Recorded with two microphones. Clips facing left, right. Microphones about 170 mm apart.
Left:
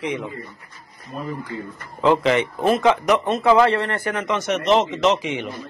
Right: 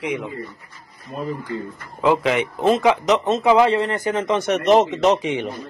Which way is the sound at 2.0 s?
10° right (ahead or behind).